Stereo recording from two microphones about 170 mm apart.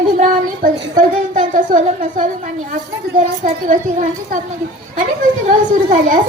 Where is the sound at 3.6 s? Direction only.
50° right (ahead or behind).